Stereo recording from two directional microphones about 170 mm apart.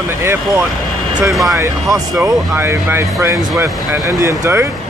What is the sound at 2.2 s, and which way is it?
Speech, 15° right (ahead or behind).